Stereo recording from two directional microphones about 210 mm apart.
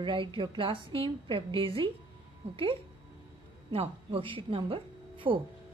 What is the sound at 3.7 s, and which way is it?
A woman's voice, 25° right (ahead or behind).